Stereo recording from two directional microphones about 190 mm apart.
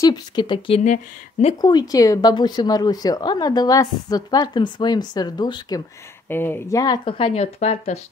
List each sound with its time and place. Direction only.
0.0 s a woman's voice: 20° left (ahead or behind); by 1.5 s 35° left (ahead or behind)
1.6 s a woman's voice: 20° left (ahead or behind)
6.2 s a woman's voice: 10° left (ahead or behind); by 8.0 s 35° left (ahead or behind)